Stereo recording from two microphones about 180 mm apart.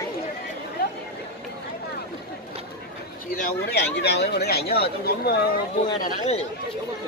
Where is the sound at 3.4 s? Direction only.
65° left (ahead or behind).